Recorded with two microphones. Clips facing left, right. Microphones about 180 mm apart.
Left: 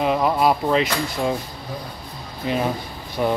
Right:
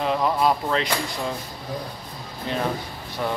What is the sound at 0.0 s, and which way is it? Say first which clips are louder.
Speech: left 3 dB; 10° left (ahead or behind).